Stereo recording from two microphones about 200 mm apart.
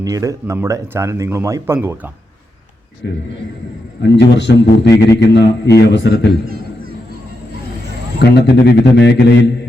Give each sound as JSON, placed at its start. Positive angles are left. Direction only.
{"t": 0.0, "sound": "speech", "side_deg": -15}
{"t": 3.0, "sound": "speech", "side_deg": 60}
{"t": 8.2, "sound": "speech", "side_deg": 55}